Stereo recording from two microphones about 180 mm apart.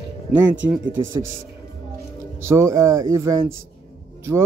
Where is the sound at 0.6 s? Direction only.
10° right (ahead or behind).